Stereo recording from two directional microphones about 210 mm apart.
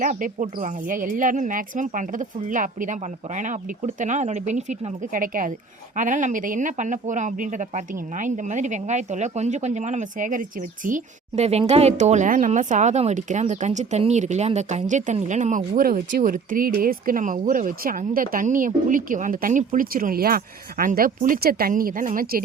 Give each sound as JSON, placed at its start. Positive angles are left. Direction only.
{"t": 0.0, "sound": "a woman's voice", "side_deg": -35}